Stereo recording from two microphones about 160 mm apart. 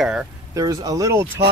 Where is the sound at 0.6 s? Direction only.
25° right (ahead or behind).